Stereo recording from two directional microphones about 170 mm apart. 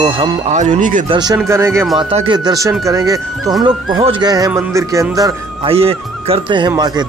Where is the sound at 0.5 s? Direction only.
45° right (ahead or behind).